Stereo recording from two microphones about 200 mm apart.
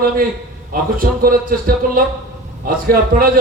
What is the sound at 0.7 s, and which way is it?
A man's voice, 45° right (ahead or behind).